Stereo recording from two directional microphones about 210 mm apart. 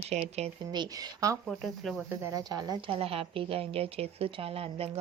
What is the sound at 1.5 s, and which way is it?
A woman's voice, centre (ahead or behind).